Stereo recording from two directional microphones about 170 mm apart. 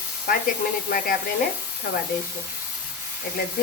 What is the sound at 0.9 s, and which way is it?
Speech, 60° left (ahead or behind).